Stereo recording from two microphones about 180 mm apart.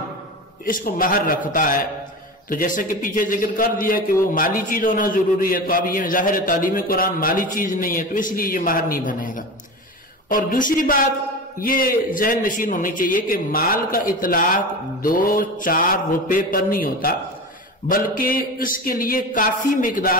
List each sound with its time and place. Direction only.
0.7 s a man's voice: 50° left (ahead or behind)